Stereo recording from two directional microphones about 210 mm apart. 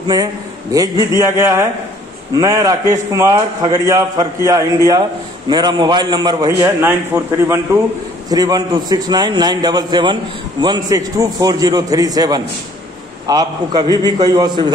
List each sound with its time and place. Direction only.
0.1 s a man's voice: 15° right (ahead or behind)
8.3 s a man's voice: 20° right (ahead or behind)